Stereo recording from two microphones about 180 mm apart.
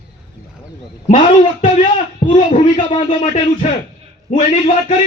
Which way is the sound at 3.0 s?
45° left (ahead or behind).